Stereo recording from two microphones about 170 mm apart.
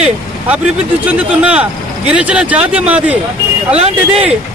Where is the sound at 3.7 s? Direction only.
35° right (ahead or behind).